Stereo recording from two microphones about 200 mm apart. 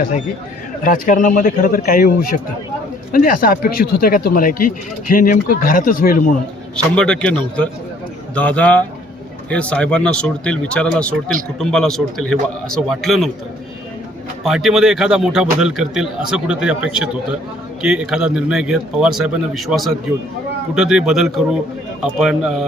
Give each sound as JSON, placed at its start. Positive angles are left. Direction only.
{"t": 0.9, "sound": "speech", "side_deg": 40}
{"t": 6.9, "sound": "a man's voice", "side_deg": 5}
{"t": 14.4, "sound": "a man's voice", "side_deg": 0}